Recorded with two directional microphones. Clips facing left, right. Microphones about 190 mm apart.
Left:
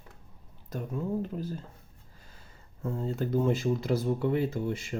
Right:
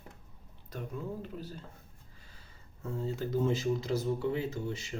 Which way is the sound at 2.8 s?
55° left (ahead or behind).